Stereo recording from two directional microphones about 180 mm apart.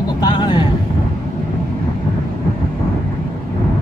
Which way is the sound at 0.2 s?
25° left (ahead or behind).